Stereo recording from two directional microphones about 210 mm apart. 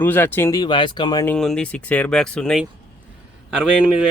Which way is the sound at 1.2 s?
5° left (ahead or behind).